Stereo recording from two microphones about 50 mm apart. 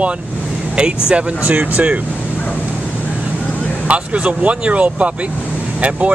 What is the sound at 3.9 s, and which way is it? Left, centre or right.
Speech, right.